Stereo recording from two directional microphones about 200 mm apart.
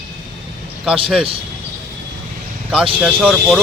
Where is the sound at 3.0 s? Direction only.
5° right (ahead or behind).